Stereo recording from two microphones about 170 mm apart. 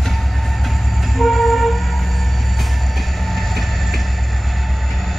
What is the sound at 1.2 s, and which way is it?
Train, centre (ahead or behind).